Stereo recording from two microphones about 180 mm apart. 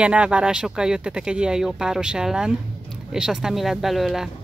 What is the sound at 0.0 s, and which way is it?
Speech, 5° right (ahead or behind).